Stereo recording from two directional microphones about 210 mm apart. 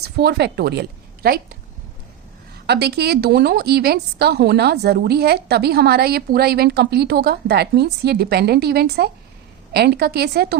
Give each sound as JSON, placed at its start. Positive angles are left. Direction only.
{"t": 0.0, "sound": "a woman's voice", "side_deg": -50}
{"t": 2.6, "sound": "speech", "side_deg": -50}